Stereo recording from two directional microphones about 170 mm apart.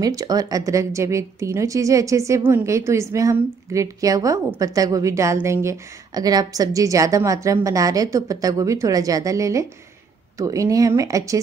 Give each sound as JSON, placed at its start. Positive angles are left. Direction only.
{"t": 0.0, "sound": "a woman's voice", "side_deg": -20}